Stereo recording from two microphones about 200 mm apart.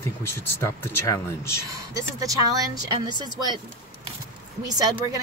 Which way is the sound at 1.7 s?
15° right (ahead or behind).